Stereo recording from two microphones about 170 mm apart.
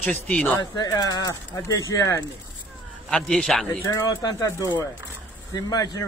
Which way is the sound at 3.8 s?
20° left (ahead or behind).